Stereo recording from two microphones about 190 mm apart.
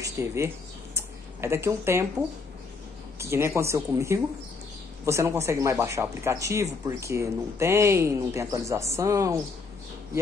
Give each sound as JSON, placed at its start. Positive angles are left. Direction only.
{"t": 0.0, "sound": "speech", "side_deg": -15}
{"t": 0.9, "sound": "a sound", "side_deg": -15}
{"t": 3.2, "sound": "speech", "side_deg": -15}